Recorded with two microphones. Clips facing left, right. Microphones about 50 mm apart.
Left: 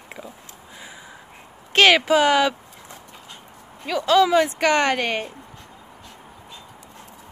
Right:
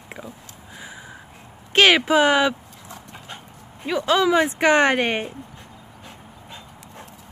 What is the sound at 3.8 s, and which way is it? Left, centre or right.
Speech, centre.